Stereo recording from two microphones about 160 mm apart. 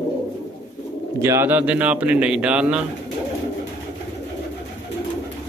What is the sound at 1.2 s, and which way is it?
Speech, 15° right (ahead or behind).